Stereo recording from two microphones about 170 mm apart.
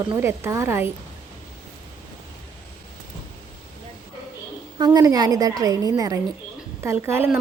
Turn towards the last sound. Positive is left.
turn(degrees=-15)  # may be behind; listen again after turning